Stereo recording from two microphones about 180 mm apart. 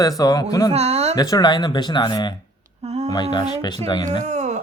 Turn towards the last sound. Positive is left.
turn(degrees=-40)  # may be behind; listen again after turning